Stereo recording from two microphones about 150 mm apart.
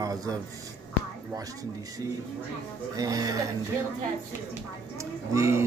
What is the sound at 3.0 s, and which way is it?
Speech, 25° right (ahead or behind).